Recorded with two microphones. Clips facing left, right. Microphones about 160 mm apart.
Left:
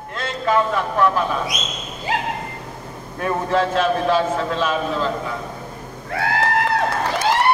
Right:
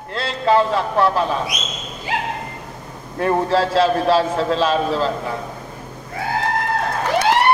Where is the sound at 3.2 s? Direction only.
30° right (ahead or behind).